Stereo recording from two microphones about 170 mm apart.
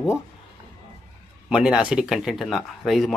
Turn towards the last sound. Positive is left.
turn(degrees=0)  # may be behind; listen again after turning